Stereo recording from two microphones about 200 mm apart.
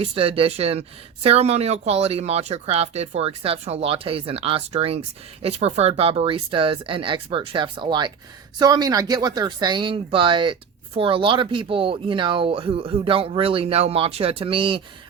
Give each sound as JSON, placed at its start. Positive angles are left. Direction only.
{"t": 0.0, "sound": "speech", "side_deg": -30}